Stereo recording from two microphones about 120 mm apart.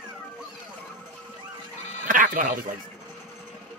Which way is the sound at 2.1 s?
90° right.